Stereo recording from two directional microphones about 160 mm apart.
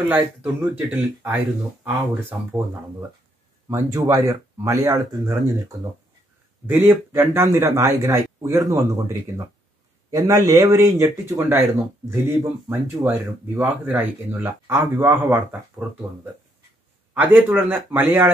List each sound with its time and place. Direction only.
0.1 s speech: 10° right (ahead or behind)
3.6 s speech: 20° right (ahead or behind)
17.1 s speech: 10° right (ahead or behind)